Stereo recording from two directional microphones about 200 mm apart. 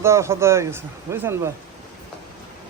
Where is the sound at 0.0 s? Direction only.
15° right (ahead or behind).